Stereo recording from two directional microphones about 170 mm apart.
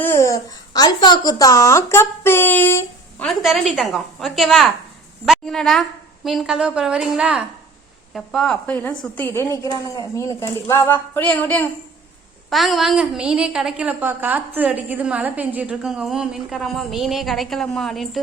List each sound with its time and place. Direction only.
0.0 s a child's voice: 15° left (ahead or behind)
3.2 s a woman's voice: centre (ahead or behind)
12.5 s a woman's voice: centre (ahead or behind)